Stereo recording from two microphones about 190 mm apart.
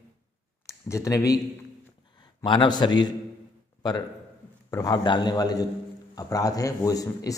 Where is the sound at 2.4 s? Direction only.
25° left (ahead or behind).